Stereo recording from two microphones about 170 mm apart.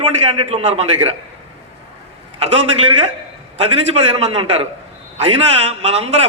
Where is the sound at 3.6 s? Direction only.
35° right (ahead or behind).